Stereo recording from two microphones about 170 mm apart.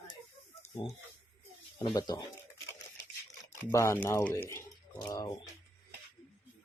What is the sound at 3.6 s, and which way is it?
Speech, 15° left (ahead or behind).